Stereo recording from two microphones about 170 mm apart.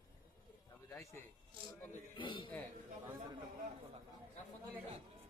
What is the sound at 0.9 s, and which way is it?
Speech, 20° left (ahead or behind).